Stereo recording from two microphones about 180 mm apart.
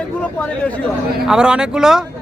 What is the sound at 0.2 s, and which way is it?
Speech, 5° left (ahead or behind).